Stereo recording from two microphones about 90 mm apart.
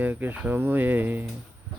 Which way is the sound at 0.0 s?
20° right (ahead or behind).